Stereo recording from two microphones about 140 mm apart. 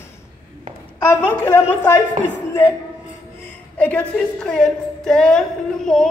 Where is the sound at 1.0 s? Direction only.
20° left (ahead or behind).